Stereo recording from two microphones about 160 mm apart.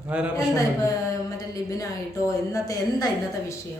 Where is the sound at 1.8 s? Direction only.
20° left (ahead or behind).